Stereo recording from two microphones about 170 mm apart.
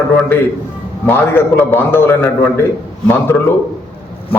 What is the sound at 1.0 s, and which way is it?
A man's voice, 10° left (ahead or behind).